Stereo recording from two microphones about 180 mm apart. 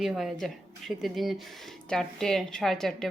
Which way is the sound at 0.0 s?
Centre (ahead or behind).